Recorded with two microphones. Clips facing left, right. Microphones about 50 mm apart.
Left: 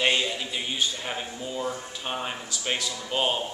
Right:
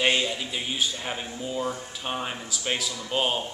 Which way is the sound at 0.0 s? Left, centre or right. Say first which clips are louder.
Right 1 dB; centre.